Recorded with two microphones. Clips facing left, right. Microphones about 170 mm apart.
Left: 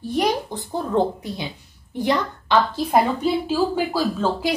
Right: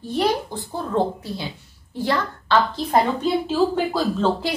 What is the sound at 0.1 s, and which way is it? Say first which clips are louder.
A woman's voice: even; 15° left (ahead or behind).